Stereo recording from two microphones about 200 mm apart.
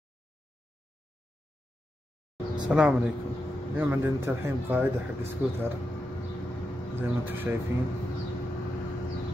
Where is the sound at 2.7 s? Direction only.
5° right (ahead or behind).